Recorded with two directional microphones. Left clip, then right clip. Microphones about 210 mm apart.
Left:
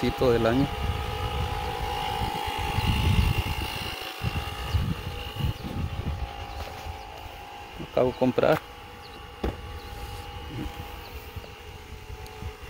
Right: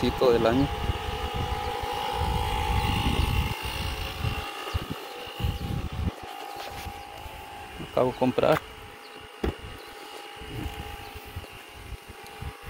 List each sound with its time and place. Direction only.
0.0 s vehicle: centre (ahead or behind); by 4.4 s 15° left (ahead or behind)
7.9 s speech: 20° left (ahead or behind)